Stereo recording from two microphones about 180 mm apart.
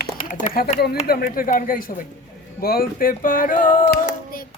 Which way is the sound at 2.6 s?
55° left (ahead or behind).